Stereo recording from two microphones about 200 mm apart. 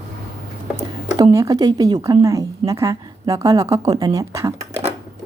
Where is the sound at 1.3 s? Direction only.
15° right (ahead or behind).